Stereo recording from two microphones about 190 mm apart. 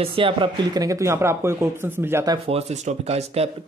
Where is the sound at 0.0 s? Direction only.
25° right (ahead or behind).